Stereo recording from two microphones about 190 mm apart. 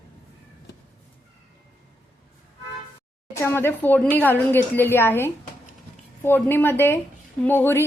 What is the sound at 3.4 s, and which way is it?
A woman's voice, 10° left (ahead or behind).